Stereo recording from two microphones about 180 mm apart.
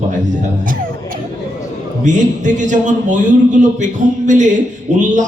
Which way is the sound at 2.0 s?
45° right (ahead or behind).